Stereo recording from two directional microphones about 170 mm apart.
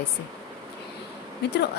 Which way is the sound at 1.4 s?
80° left.